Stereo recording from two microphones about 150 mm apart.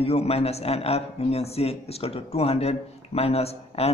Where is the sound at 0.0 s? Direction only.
40° left (ahead or behind).